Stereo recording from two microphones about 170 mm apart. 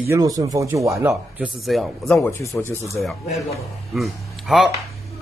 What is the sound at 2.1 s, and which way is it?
Speech, 15° left (ahead or behind).